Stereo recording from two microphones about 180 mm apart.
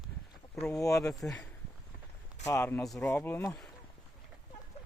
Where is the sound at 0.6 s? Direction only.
5° left (ahead or behind).